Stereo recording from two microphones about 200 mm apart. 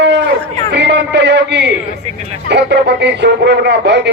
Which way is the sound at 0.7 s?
60° right (ahead or behind).